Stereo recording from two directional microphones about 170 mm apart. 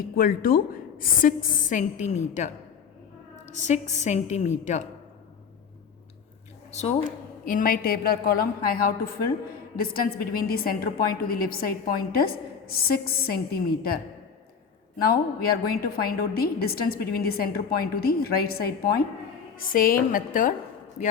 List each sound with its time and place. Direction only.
0.0 s a woman's voice: 60° left (ahead or behind); by 2.5 s 45° left (ahead or behind)
3.5 s a woman's voice: 45° left (ahead or behind)
6.7 s speech: 40° left (ahead or behind)
7.4 s a woman's voice: 55° left (ahead or behind)
15.0 s a woman's voice: 60° left (ahead or behind)